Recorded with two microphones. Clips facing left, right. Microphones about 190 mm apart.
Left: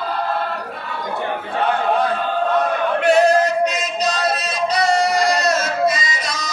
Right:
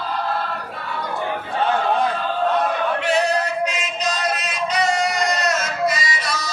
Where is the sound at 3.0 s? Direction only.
40° left (ahead or behind); by 6.5 s 20° left (ahead or behind).